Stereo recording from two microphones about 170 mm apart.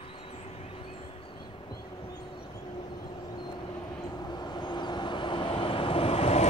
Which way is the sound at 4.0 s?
25° left (ahead or behind).